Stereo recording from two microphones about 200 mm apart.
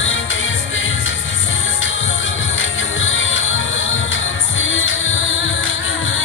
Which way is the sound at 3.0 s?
80° left.